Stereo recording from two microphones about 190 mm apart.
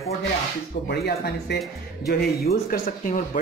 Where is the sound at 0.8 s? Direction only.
60° left (ahead or behind).